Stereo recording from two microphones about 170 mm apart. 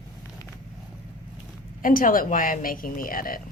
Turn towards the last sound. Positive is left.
turn(degrees=55)  # may be behind; listen again after turning